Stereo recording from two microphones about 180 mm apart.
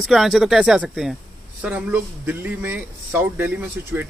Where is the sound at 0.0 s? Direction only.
Centre (ahead or behind).